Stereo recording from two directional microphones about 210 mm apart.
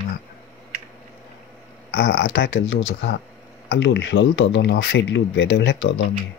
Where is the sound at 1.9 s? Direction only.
60° left (ahead or behind).